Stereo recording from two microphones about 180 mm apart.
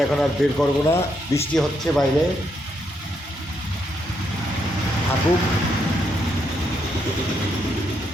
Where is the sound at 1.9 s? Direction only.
5° left (ahead or behind).